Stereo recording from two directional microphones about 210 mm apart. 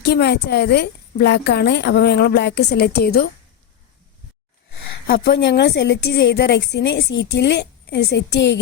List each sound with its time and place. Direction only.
0.0 s speech: 50° left (ahead or behind)
5.0 s a woman's voice: 45° left (ahead or behind)